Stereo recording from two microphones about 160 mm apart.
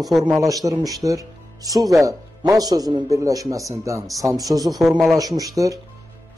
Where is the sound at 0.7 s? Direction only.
20° right (ahead or behind).